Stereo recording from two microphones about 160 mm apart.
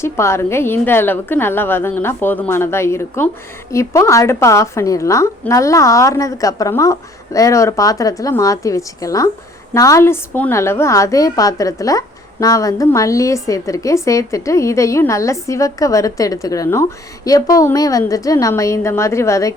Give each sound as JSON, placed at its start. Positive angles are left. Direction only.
{"t": 0.0, "sound": "a woman's voice", "side_deg": 15}